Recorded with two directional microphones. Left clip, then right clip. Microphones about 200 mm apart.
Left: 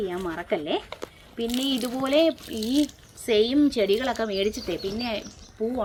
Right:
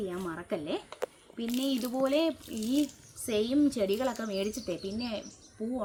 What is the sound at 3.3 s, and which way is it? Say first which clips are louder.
Speech: left 7 dB; 25° right (ahead or behind).